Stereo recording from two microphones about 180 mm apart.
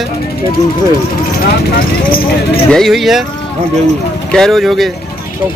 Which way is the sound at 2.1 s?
55° left (ahead or behind).